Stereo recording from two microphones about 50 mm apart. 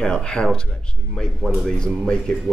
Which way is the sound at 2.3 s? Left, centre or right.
Centre.